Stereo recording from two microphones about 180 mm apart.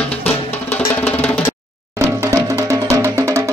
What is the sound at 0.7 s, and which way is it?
Music, 10° left (ahead or behind).